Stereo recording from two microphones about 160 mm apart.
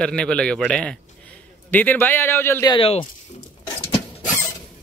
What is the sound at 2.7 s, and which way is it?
Speech, 35° left (ahead or behind).